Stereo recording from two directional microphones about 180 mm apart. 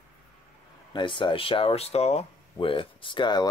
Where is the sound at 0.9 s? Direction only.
25° left (ahead or behind).